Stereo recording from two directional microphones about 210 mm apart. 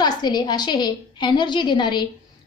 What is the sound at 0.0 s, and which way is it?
A woman's voice, 20° left (ahead or behind).